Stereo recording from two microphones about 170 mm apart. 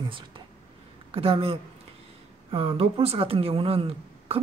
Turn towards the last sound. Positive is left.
turn(degrees=-35)  # may be behind; listen again after turning